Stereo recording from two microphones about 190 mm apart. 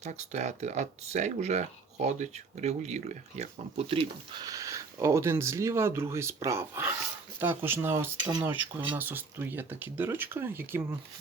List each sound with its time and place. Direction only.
0.0 s speech: 35° right (ahead or behind); by 10.8 s 10° right (ahead or behind)